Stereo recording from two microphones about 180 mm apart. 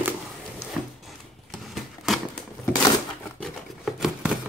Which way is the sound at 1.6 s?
Centre (ahead or behind).